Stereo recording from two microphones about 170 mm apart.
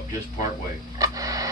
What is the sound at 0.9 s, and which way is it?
Radio, 20° right (ahead or behind).